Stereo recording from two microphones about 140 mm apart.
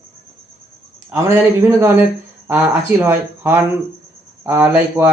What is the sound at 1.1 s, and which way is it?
A man's voice, 15° right (ahead or behind).